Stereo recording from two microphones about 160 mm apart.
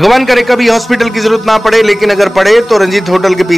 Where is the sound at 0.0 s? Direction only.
Centre (ahead or behind).